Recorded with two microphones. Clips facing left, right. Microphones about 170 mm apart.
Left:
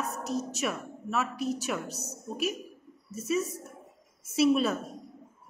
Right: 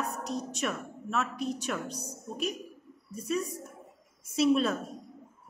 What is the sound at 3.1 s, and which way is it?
A woman's voice, 5° left (ahead or behind).